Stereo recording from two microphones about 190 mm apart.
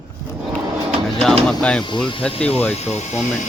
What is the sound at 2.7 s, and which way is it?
Speech, 35° left (ahead or behind).